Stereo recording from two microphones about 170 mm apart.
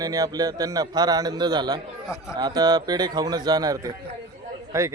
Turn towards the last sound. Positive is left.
turn(degrees=-15)  # may be behind; listen again after turning